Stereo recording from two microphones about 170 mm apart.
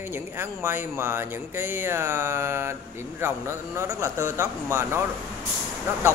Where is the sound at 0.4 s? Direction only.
15° right (ahead or behind).